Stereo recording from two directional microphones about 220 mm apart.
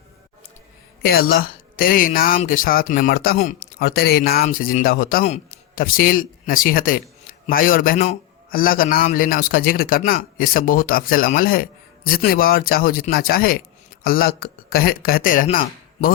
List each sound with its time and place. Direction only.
1.0 s speech: 45° left (ahead or behind)